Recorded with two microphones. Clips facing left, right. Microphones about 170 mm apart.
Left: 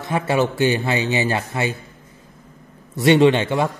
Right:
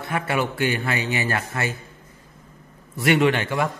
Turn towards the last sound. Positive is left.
turn(degrees=25)  # may be behind; listen again after turning